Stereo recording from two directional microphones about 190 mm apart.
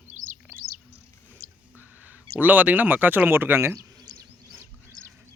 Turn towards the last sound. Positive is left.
turn(degrees=-20)  # may be behind; listen again after turning